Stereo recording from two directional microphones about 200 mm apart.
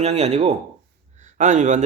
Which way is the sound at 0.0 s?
30° right (ahead or behind).